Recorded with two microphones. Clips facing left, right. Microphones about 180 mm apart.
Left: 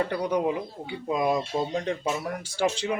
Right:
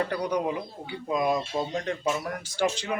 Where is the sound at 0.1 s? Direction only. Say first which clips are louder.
Left 2 dB; 25° left (ahead or behind).